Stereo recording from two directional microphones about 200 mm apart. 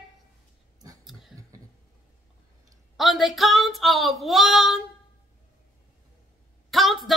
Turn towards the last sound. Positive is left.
turn(degrees=0)  # may be behind; listen again after turning